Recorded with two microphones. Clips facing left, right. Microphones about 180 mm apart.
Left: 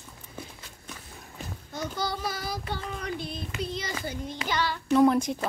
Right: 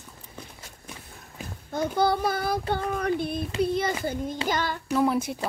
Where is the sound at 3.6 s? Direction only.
55° right (ahead or behind).